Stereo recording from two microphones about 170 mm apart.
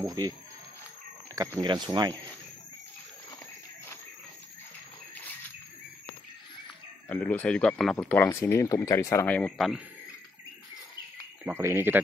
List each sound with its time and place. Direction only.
0.0 s speech: 20° right (ahead or behind)
1.6 s speech: 25° right (ahead or behind)
7.1 s speech: 10° left (ahead or behind)
11.5 s speech: 15° right (ahead or behind)